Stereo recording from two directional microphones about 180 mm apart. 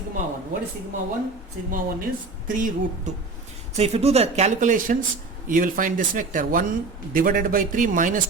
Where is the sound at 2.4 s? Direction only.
45° right (ahead or behind).